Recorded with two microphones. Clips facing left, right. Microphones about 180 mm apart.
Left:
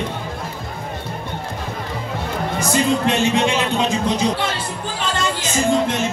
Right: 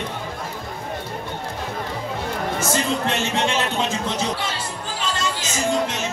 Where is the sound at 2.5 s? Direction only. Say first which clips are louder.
Left 6 dB; 15° left (ahead or behind).